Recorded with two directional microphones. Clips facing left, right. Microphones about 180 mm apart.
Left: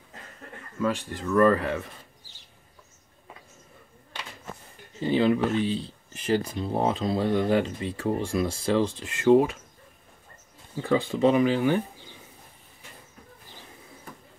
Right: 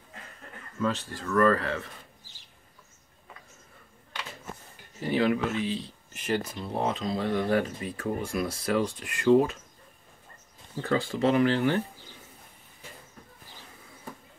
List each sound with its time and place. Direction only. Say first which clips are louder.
0.7 s speech: left 2 dB; 10° left (ahead or behind)
5.0 s speech: left 3 dB; 25° left (ahead or behind)
10.8 s speech: left 4 dB; 15° left (ahead or behind)